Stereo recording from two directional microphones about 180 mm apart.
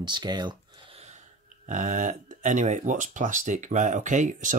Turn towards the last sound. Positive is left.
turn(degrees=-45)  # may be behind; listen again after turning